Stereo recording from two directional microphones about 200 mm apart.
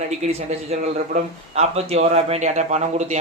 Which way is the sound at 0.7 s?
40° right (ahead or behind).